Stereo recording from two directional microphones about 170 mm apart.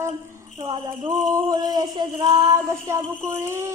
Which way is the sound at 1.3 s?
25° right (ahead or behind).